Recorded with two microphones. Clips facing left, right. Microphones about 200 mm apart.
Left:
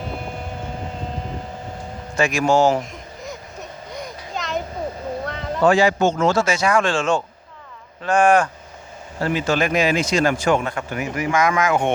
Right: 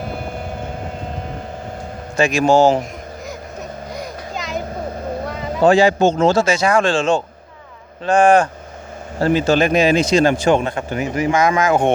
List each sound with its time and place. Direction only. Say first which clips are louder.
2.1 s speech: right 4 dB; 30° right (ahead or behind)
3.9 s a sound: right 1 dB; centre (ahead or behind)
5.2 s vehicle: right 3 dB; 5° right (ahead or behind)
5.6 s speech: right 4 dB; 35° right (ahead or behind)